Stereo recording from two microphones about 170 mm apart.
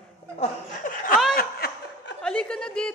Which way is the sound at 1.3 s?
65° left (ahead or behind).